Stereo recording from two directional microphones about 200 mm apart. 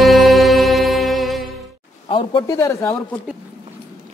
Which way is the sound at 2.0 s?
25° left (ahead or behind).